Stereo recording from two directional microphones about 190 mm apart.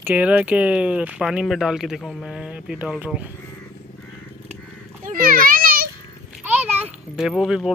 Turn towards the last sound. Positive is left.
turn(degrees=0)  # may be behind; listen again after turning